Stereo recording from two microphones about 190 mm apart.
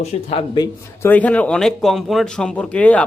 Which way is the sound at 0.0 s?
35° left (ahead or behind).